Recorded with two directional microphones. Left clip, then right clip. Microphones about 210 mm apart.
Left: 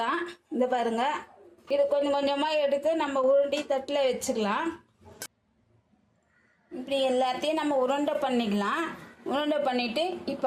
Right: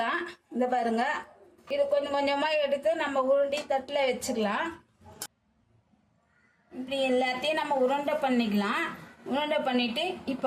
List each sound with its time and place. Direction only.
0.0 s a sound: 25° left (ahead or behind)
1.7 s speech: 25° left (ahead or behind)
6.8 s a woman's voice: 35° left (ahead or behind)